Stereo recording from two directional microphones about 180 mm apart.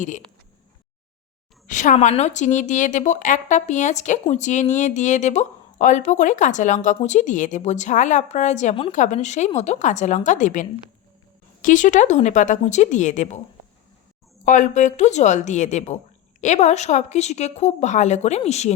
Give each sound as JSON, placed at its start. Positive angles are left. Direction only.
{"t": 1.6, "sound": "a woman's voice", "side_deg": 45}
{"t": 14.4, "sound": "a woman's voice", "side_deg": 45}